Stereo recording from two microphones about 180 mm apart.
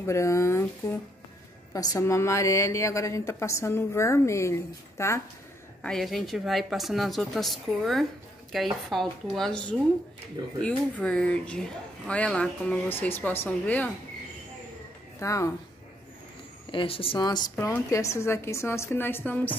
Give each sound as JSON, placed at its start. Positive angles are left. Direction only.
{"t": 0.0, "sound": "a woman's voice", "side_deg": 15}
{"t": 1.7, "sound": "a woman's voice", "side_deg": 20}
{"t": 5.8, "sound": "a woman's voice", "side_deg": 5}
{"t": 15.1, "sound": "a woman's voice", "side_deg": 15}
{"t": 16.7, "sound": "a woman's voice", "side_deg": 30}